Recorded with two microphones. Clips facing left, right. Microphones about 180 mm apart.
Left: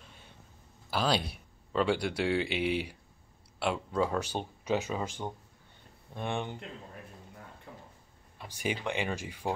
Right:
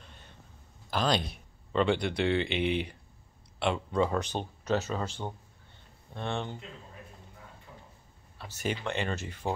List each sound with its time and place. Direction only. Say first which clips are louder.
0.0 s cough: right 1 dB; 5° left (ahead or behind)
0.8 s speech: right 1 dB; 5° left (ahead or behind)
7.7 s drawer open or close: left 4 dB; 55° left (ahead or behind)
8.4 s speech: right 1 dB; 10° left (ahead or behind)